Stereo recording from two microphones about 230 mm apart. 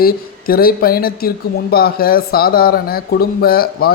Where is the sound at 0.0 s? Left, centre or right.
Left.